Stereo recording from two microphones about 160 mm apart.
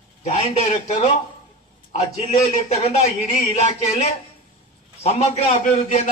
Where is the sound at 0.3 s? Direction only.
45° left (ahead or behind).